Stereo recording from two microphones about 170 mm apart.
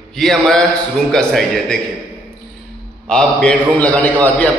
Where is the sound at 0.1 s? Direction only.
Centre (ahead or behind).